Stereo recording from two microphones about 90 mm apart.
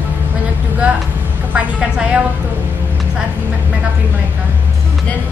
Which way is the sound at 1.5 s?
10° right (ahead or behind).